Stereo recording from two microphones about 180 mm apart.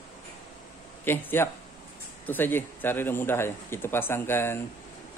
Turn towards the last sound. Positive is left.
turn(degrees=15)  # may be behind; listen again after turning